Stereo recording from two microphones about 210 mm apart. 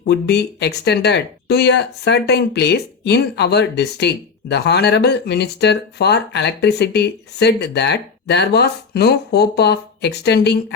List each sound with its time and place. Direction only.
0.0 s speech: 55° left (ahead or behind)